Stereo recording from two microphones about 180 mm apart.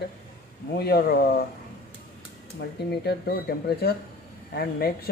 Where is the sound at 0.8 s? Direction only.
60° left (ahead or behind).